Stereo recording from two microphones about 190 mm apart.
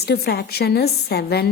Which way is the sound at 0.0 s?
60° left (ahead or behind).